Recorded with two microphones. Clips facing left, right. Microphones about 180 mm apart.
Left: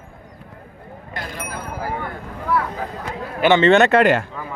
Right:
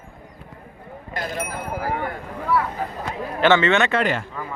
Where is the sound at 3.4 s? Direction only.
15° left (ahead or behind).